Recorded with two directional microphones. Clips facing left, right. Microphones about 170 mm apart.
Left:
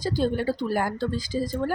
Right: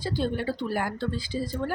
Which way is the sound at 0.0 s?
40° left (ahead or behind).